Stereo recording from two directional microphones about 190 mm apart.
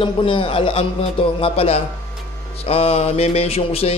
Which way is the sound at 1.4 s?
30° left (ahead or behind).